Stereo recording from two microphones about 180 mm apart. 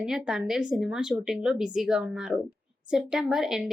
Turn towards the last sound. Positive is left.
turn(degrees=0)  # may be behind; listen again after turning